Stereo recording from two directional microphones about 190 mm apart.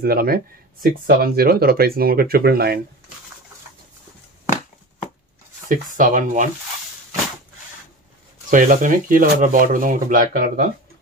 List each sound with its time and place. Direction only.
0.0 s speech: 50° right (ahead or behind)
5.9 s speech: 45° right (ahead or behind)
8.5 s speech: 45° right (ahead or behind)